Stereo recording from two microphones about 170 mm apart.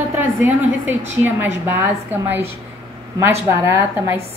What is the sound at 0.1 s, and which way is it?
A woman's voice, 15° right (ahead or behind).